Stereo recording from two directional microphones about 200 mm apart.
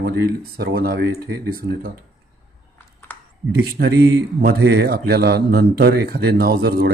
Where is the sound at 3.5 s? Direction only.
55° right (ahead or behind).